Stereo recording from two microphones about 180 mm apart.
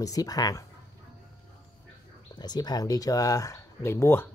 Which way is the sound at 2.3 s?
25° left (ahead or behind).